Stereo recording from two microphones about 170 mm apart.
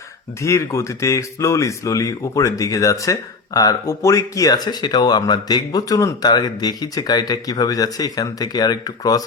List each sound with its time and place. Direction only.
0.4 s speech: 15° left (ahead or behind)